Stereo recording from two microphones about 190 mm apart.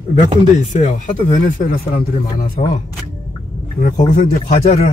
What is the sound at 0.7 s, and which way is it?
Speech, 40° left (ahead or behind).